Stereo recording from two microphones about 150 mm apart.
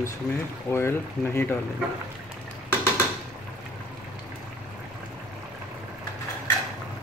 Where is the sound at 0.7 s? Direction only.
15° left (ahead or behind).